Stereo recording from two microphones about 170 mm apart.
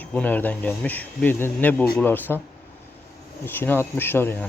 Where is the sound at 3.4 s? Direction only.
15° left (ahead or behind).